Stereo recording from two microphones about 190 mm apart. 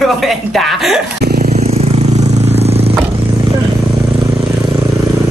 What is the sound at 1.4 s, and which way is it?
Vehicle, 35° right (ahead or behind).